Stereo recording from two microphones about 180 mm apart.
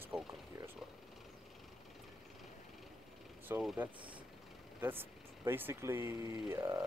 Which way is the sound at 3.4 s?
5° right (ahead or behind).